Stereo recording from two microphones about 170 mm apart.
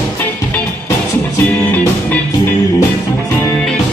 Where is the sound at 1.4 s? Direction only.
10° left (ahead or behind).